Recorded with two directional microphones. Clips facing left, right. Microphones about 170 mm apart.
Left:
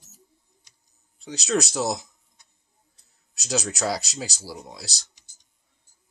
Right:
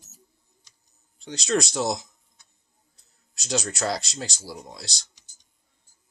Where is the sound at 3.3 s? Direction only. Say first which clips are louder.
Even; 5° left (ahead or behind).